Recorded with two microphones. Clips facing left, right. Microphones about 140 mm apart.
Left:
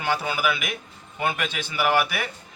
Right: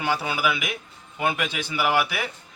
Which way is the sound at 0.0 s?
10° right (ahead or behind).